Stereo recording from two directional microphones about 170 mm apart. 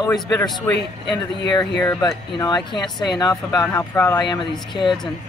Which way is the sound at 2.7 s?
25° left (ahead or behind).